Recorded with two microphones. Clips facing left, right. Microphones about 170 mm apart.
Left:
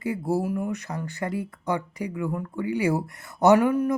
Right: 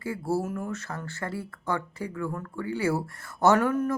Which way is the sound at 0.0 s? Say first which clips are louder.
Left 3 dB; 20° left (ahead or behind).